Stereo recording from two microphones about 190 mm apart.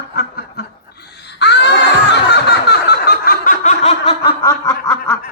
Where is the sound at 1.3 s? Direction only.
65° left (ahead or behind); by 4.3 s 30° left (ahead or behind).